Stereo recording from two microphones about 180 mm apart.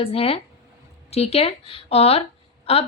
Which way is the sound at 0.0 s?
30° left (ahead or behind).